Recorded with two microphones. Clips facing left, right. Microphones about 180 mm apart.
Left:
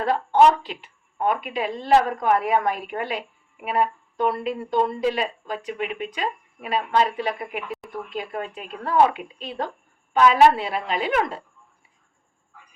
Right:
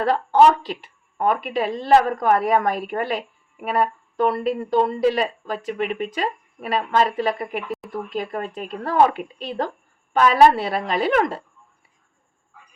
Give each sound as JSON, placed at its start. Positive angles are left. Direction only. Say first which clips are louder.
{"t": 0.0, "sound": "a woman's voice", "louder": "right 2 dB", "side_deg": -40}